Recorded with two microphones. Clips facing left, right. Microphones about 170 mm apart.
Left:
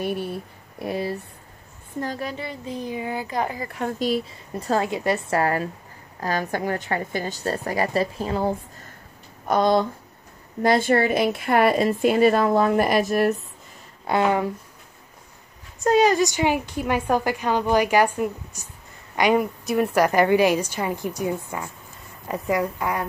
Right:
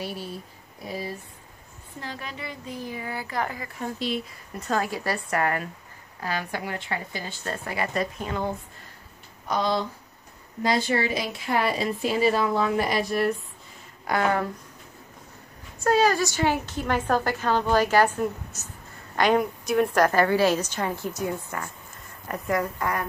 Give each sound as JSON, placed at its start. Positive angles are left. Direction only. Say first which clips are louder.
{"t": 0.0, "sound": "speech", "louder": "left 7 dB", "side_deg": 60}
{"t": 2.0, "sound": "a woman's voice", "louder": "left 8 dB", "side_deg": 40}
{"t": 2.8, "sound": "speech", "louder": "left 5 dB", "side_deg": 20}
{"t": 4.0, "sound": "a woman's voice", "louder": "left 6 dB", "side_deg": 35}
{"t": 6.2, "sound": "a woman's voice", "louder": "left 6 dB", "side_deg": 45}
{"t": 9.5, "sound": "speech", "louder": "left 6 dB", "side_deg": 55}
{"t": 14.0, "sound": "speech", "louder": "left 3 dB", "side_deg": 20}
{"t": 15.8, "sound": "a woman's voice", "louder": "left 3 dB", "side_deg": 20}